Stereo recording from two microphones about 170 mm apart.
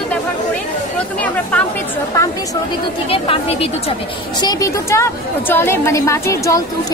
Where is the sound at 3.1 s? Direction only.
35° left (ahead or behind).